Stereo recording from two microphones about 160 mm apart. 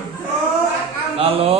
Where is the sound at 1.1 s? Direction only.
40° right (ahead or behind).